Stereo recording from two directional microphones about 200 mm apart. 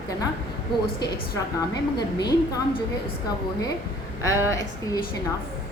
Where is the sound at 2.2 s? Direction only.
20° left (ahead or behind).